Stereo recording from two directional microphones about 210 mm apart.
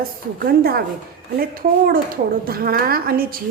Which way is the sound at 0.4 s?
45° right (ahead or behind).